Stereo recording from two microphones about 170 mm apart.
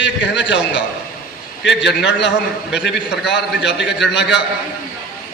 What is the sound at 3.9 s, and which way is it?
Speech, 90° left.